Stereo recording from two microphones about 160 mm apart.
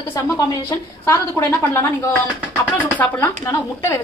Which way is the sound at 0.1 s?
25° left (ahead or behind).